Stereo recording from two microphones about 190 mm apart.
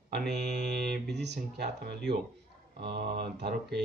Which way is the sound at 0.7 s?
60° right (ahead or behind).